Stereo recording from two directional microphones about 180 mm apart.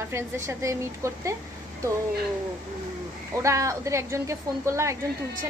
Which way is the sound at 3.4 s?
15° right (ahead or behind).